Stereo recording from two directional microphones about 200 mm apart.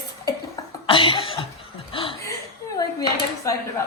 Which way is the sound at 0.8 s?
25° left (ahead or behind).